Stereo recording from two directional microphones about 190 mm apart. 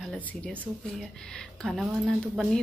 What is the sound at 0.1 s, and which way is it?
Speech, 5° left (ahead or behind).